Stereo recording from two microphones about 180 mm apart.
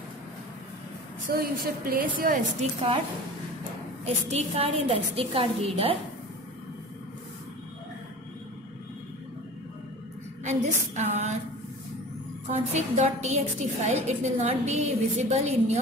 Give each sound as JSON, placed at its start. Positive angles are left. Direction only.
{"t": 1.2, "sound": "a woman's voice", "side_deg": -50}
{"t": 4.0, "sound": "a woman's voice", "side_deg": -35}
{"t": 10.4, "sound": "a woman's voice", "side_deg": -40}
{"t": 12.4, "sound": "a woman's voice", "side_deg": -40}